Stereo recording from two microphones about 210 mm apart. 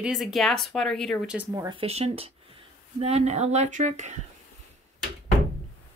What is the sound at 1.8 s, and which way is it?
Speech, 30° right (ahead or behind).